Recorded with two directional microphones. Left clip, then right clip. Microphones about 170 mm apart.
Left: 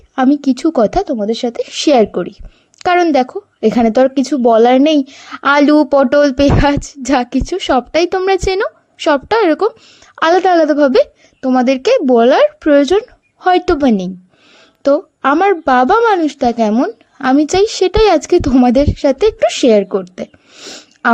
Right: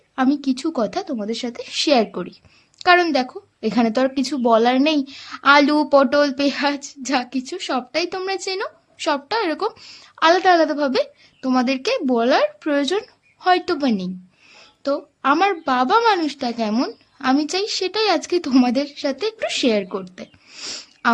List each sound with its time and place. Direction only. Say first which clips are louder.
0.2 s a woman's voice: left 8 dB; 45° left (ahead or behind)